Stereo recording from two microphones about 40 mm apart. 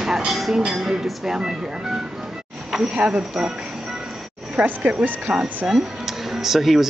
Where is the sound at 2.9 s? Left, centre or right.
Right.